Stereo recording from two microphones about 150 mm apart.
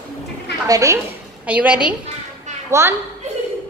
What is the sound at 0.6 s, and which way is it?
Speech, 20° right (ahead or behind).